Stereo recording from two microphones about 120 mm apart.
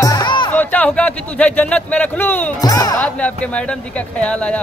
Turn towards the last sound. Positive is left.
turn(degrees=10)  # may be behind; listen again after turning